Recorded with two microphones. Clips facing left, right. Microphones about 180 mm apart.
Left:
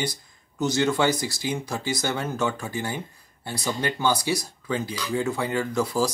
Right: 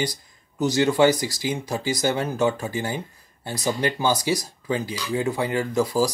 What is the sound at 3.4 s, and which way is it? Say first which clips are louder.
Speech: right 3 dB; 40° right (ahead or behind).